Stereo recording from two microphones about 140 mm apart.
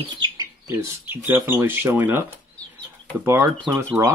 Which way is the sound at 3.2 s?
20° right (ahead or behind).